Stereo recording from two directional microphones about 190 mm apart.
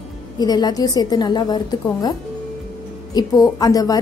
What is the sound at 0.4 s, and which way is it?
A woman's voice, 20° left (ahead or behind).